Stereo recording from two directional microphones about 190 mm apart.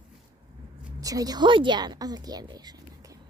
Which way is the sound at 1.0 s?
20° right (ahead or behind).